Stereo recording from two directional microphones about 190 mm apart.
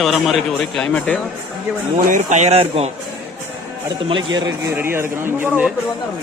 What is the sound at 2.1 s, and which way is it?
Speech, 40° right (ahead or behind).